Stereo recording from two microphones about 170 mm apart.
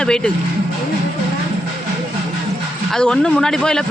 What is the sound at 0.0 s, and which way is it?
Speech, 5° left (ahead or behind).